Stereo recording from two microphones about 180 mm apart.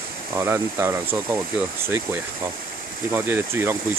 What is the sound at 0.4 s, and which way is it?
Speech, 15° right (ahead or behind).